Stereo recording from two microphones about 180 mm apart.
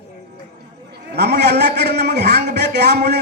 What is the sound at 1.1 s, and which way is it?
A man's voice, 65° right (ahead or behind).